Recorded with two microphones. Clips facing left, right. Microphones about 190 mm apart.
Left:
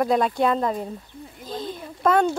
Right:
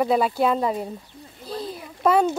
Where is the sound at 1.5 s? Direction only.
5° right (ahead or behind).